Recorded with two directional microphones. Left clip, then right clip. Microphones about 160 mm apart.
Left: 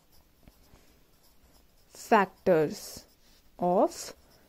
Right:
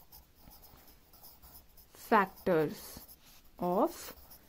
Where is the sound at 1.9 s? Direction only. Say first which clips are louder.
Left 4 dB; 40° left (ahead or behind).